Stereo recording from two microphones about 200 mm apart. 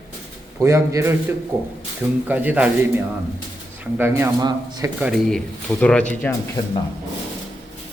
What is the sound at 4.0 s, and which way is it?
Speech, 10° right (ahead or behind).